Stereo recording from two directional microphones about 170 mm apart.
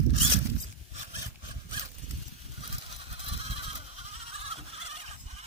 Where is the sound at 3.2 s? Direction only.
35° right (ahead or behind).